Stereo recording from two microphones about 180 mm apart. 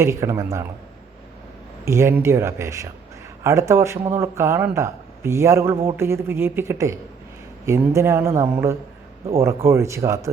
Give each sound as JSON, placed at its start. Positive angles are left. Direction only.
{"t": 0.0, "sound": "speech", "side_deg": -15}
{"t": 1.8, "sound": "speech", "side_deg": -15}